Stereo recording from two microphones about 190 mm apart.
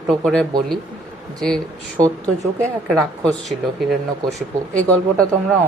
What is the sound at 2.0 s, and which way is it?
Speech, 20° right (ahead or behind).